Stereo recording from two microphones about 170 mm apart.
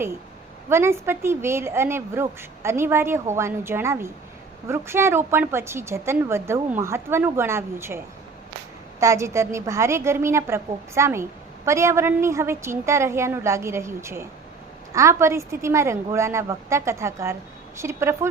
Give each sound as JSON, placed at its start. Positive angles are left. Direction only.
{"t": 0.7, "sound": "a woman's voice", "side_deg": -15}